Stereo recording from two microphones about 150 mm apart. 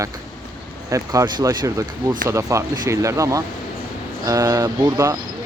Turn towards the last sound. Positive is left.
turn(degrees=-20)  # may be behind; listen again after turning